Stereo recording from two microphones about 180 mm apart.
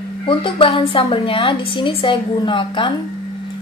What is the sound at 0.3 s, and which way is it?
Speech, 30° left (ahead or behind).